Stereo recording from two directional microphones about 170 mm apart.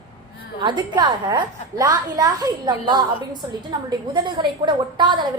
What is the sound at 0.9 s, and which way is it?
A woman's voice, 25° right (ahead or behind).